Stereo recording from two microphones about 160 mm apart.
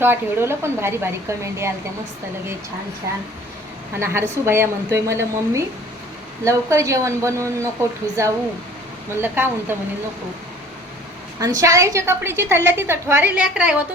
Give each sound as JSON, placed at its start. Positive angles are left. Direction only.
{"t": 0.0, "sound": "a woman's voice", "side_deg": -15}
{"t": 4.0, "sound": "a woman's voice", "side_deg": -15}
{"t": 11.3, "sound": "a woman's voice", "side_deg": -20}